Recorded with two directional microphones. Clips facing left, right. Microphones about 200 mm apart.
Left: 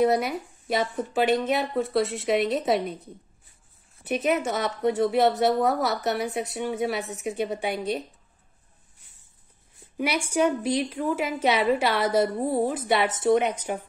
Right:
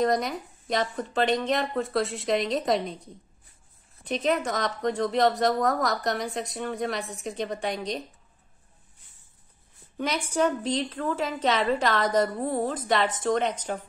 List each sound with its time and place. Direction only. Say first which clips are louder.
0.0 s a woman's voice: left 3 dB; 5° left (ahead or behind)
9.9 s a woman's voice: left 2 dB; 10° left (ahead or behind)